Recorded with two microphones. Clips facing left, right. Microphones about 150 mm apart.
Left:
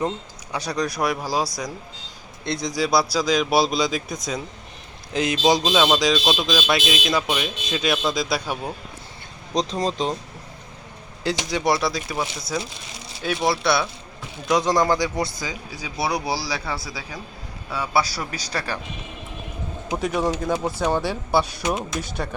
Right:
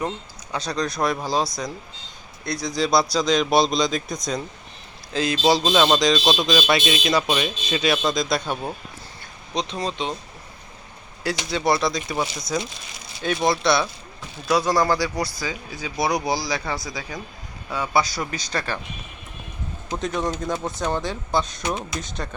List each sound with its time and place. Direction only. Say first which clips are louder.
0.5 s speech: even; 10° left (ahead or behind)
2.4 s speech: left 1 dB; 25° left (ahead or behind)
2.7 s speech: right 1 dB; 5° left (ahead or behind)
5.1 s speech: even; 20° left (ahead or behind)
9.6 s speech: left 3 dB; 40° left (ahead or behind)
11.2 s speech: left 1 dB; 20° left (ahead or behind); by 12.2 s 5° left (ahead or behind)
13.2 s speech: right 1 dB; 5° left (ahead or behind)
14.4 s speech: even; 20° left (ahead or behind)
15.7 s speech: right 2 dB; 10° left (ahead or behind)
19.9 s speech: left 2 dB; 10° left (ahead or behind)